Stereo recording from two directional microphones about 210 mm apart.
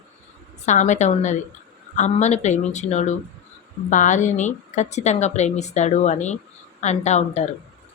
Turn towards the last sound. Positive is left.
turn(degrees=35)  # may be behind; listen again after turning